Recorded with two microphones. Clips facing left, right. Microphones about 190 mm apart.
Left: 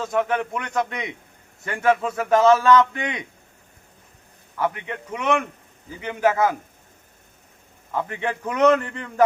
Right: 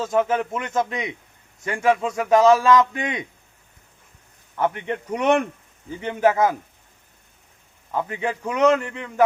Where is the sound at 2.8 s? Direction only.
20° right (ahead or behind).